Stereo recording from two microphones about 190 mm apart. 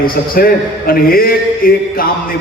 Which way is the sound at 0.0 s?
50° left (ahead or behind).